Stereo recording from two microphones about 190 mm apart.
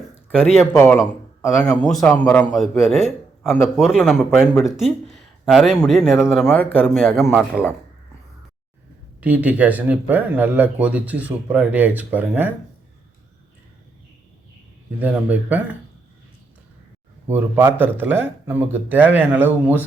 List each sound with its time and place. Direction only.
0.3 s a man's voice: 5° right (ahead or behind)
0.7 s a man's voice: 15° left (ahead or behind); by 7.6 s centre (ahead or behind)
9.2 s speech: 10° right (ahead or behind)
14.9 s speech: 10° right (ahead or behind)
17.2 s speech: 10° right (ahead or behind)